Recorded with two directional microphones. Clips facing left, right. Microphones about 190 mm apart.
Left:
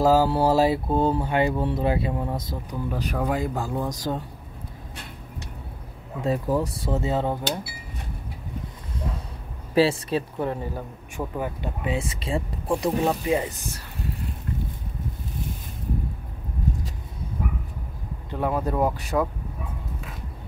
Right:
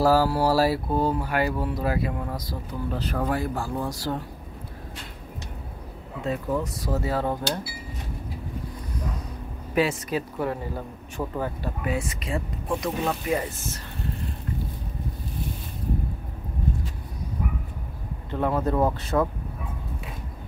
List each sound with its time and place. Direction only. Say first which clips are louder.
0.0 s speech: left 1 dB; 20° left (ahead or behind)
2.9 s speech: left 1 dB; 15° left (ahead or behind)
6.2 s speech: left 3 dB; 35° left (ahead or behind)
9.8 s speech: left 4 dB; 30° left (ahead or behind)
10.3 s speech: left 1 dB; 20° left (ahead or behind)
13.1 s speech: left 2 dB; 15° left (ahead or behind)
18.3 s speech: right 1 dB; 15° left (ahead or behind)